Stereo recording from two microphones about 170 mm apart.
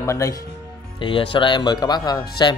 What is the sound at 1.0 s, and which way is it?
Speech, 30° left (ahead or behind).